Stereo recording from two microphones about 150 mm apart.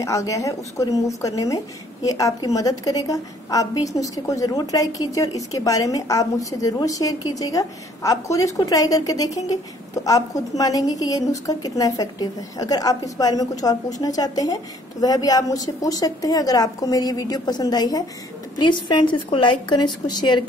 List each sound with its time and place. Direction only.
0.0 s a woman's voice: 20° left (ahead or behind)